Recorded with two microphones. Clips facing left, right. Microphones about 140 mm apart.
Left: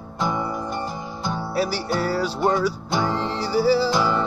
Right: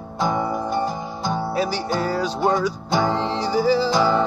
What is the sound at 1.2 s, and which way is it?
Music, 20° right (ahead or behind).